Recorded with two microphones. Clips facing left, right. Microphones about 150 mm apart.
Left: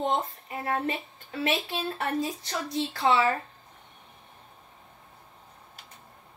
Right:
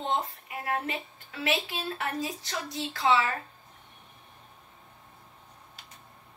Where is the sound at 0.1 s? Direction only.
30° left (ahead or behind).